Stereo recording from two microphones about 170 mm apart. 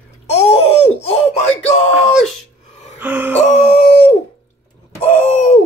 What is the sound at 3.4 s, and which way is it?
Howl, 40° left (ahead or behind).